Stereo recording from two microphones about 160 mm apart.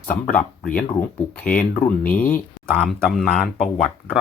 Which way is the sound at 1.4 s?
10° left (ahead or behind).